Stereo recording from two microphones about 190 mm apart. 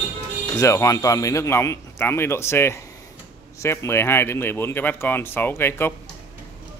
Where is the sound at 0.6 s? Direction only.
15° left (ahead or behind).